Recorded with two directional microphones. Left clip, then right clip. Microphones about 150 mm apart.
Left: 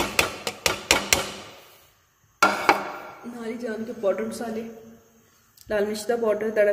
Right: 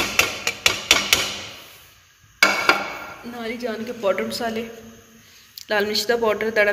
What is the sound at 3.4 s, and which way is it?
Speech, 10° left (ahead or behind).